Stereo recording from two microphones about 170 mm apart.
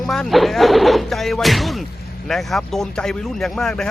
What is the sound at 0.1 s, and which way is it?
Speech, centre (ahead or behind).